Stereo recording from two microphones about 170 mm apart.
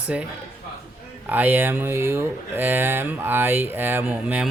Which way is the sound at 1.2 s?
10° right (ahead or behind).